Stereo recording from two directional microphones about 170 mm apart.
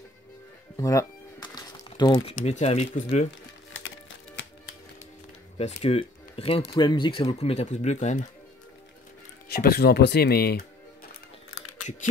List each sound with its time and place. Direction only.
0.7 s music: 20° left (ahead or behind)
2.4 s speech: 40° left (ahead or behind)
4.4 s music: 90° left
5.8 s speech: 35° left (ahead or behind)
9.5 s speech: 70° left (ahead or behind)